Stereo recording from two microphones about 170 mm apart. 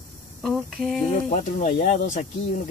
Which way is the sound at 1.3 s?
50° left (ahead or behind).